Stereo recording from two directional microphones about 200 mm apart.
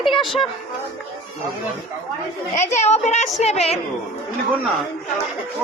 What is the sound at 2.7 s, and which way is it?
A woman's voice, 35° left (ahead or behind).